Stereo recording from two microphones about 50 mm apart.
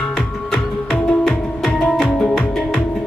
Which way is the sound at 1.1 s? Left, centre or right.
Centre.